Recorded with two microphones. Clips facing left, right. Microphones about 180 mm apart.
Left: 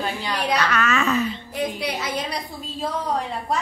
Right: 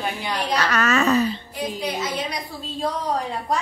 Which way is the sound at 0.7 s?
40° right (ahead or behind).